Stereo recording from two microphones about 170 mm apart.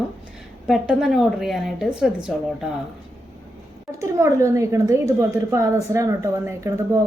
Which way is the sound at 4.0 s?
15° right (ahead or behind).